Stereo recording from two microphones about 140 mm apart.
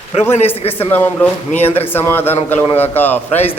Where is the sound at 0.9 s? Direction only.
15° left (ahead or behind).